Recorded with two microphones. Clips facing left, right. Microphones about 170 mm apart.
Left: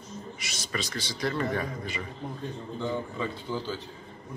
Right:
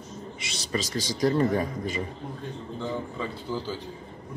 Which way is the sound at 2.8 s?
5° right (ahead or behind).